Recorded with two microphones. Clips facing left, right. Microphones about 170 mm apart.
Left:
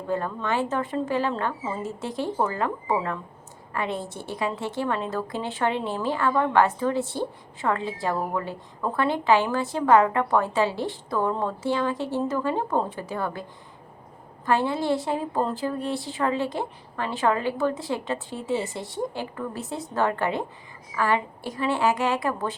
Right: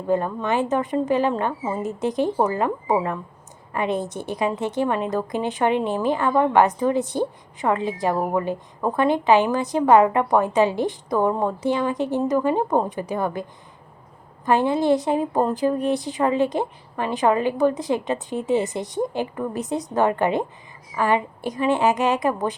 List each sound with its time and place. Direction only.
0.1 s a woman's voice: 15° right (ahead or behind)
14.4 s a woman's voice: 20° right (ahead or behind)